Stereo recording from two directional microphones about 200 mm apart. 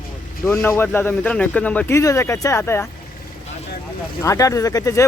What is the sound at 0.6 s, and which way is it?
Speech, 10° left (ahead or behind).